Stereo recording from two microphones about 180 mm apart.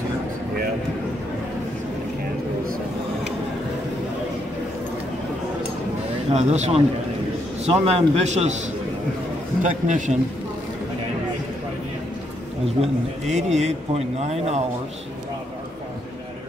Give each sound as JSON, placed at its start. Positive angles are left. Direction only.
{"t": 6.3, "sound": "speech", "side_deg": -40}
{"t": 9.6, "sound": "a man's voice", "side_deg": -45}
{"t": 12.8, "sound": "speech", "side_deg": -40}